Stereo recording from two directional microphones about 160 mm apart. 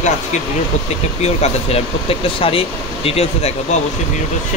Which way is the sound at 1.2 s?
40° left (ahead or behind).